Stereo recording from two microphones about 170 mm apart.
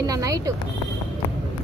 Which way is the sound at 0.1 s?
20° right (ahead or behind).